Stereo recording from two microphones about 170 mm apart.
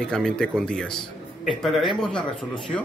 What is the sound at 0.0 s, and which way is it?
A man's voice, 5° left (ahead or behind).